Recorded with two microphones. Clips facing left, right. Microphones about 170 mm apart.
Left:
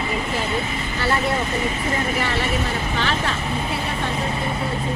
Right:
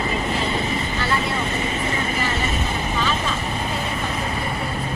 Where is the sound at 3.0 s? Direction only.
75° left (ahead or behind).